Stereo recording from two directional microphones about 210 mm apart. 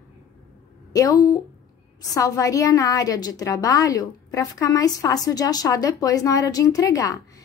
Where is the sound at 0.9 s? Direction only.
15° left (ahead or behind).